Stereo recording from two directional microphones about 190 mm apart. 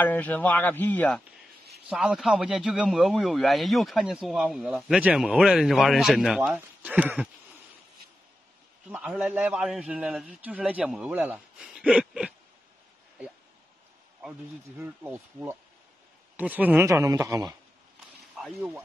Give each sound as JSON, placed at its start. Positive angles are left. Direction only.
{"t": 0.0, "sound": "a man's voice", "side_deg": 10}
{"t": 1.9, "sound": "a man's voice", "side_deg": -5}
{"t": 8.9, "sound": "a man's voice", "side_deg": -5}
{"t": 14.8, "sound": "speech", "side_deg": -10}
{"t": 18.3, "sound": "a sound", "side_deg": -5}